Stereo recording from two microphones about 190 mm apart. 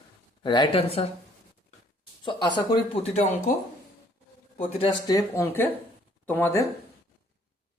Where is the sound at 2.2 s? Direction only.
20° left (ahead or behind).